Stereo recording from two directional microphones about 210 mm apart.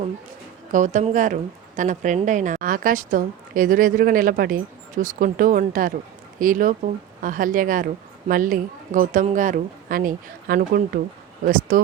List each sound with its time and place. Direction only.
0.7 s speech: 35° right (ahead or behind)